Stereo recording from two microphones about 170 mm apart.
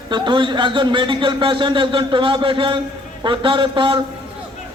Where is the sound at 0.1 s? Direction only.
30° right (ahead or behind).